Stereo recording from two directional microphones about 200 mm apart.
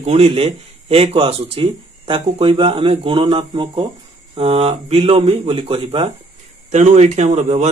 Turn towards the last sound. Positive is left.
turn(degrees=-35)  # may be behind; listen again after turning